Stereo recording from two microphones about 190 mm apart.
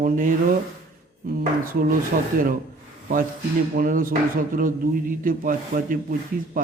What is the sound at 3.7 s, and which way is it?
Speech, 50° right (ahead or behind).